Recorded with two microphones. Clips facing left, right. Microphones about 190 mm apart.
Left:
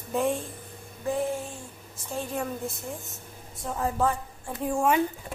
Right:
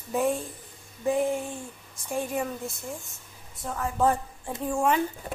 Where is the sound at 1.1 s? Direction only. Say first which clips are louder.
Right 3 dB; 15° right (ahead or behind).